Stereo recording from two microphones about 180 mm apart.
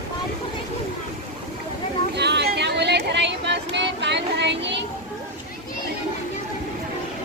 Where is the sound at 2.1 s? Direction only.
70° right (ahead or behind).